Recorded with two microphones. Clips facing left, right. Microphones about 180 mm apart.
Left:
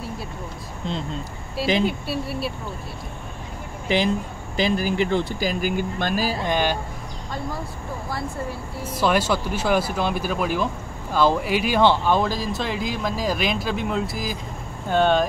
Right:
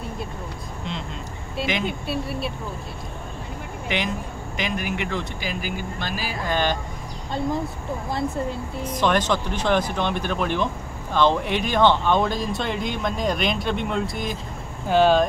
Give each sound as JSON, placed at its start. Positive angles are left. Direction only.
{"t": 1.9, "sound": "speech", "side_deg": 0}
{"t": 3.9, "sound": "speech", "side_deg": 30}
{"t": 6.4, "sound": "speech", "side_deg": 15}
{"t": 8.1, "sound": "speech", "side_deg": -20}
{"t": 8.8, "sound": "speech", "side_deg": 10}